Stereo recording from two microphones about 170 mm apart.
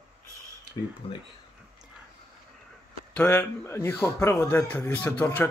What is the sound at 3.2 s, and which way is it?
A man's voice, 15° left (ahead or behind).